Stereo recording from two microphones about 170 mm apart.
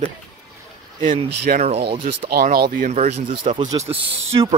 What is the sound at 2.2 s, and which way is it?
A man's voice, 60° right (ahead or behind).